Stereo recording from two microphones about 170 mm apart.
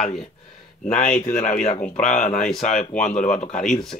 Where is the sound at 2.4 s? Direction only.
5° left (ahead or behind).